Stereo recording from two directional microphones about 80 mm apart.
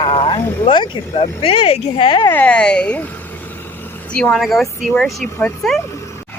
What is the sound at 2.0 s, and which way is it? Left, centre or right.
Speech, left.